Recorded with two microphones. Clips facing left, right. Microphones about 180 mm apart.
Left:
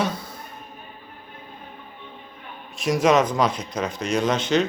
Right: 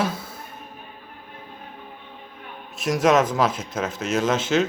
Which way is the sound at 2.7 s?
Centre (ahead or behind).